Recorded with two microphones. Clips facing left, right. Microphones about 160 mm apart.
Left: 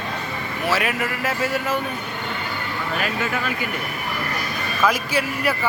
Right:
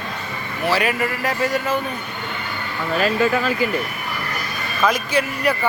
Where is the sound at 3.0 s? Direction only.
30° right (ahead or behind).